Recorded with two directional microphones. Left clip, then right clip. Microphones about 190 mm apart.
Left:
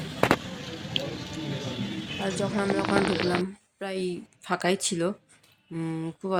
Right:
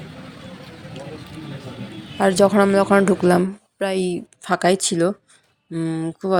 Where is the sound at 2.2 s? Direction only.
50° right (ahead or behind).